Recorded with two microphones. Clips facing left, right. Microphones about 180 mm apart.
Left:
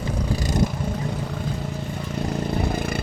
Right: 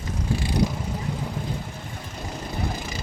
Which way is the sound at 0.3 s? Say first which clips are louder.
Even; 45° left (ahead or behind).